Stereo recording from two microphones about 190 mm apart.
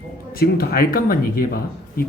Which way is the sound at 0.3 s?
50° left (ahead or behind).